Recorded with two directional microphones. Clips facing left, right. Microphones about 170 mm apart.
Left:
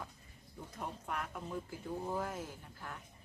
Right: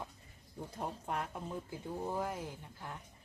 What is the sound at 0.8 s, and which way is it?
Speech, 30° right (ahead or behind).